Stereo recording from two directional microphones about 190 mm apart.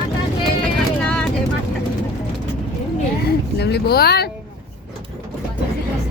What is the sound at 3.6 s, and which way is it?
Speech, 60° left (ahead or behind).